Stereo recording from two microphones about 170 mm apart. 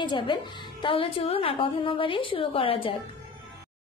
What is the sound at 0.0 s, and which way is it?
A woman's voice, 30° left (ahead or behind).